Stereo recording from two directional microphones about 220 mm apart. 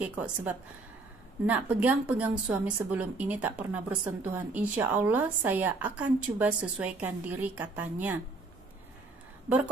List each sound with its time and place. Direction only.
0.0 s a woman's voice: 5° right (ahead or behind)
9.5 s a woman's voice: 10° right (ahead or behind)